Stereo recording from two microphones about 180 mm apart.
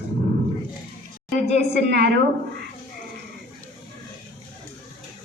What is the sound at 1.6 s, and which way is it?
Speech, 70° right (ahead or behind).